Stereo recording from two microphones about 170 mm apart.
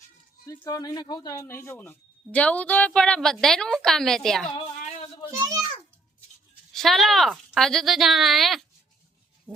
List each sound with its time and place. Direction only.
0.4 s speech: 20° left (ahead or behind); by 4.5 s centre (ahead or behind)
4.8 s a sound: 35° left (ahead or behind)
5.3 s a child's voice: 20° right (ahead or behind)
6.7 s speech: centre (ahead or behind)